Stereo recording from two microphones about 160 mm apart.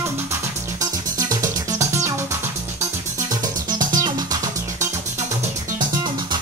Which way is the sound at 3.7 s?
25° right (ahead or behind).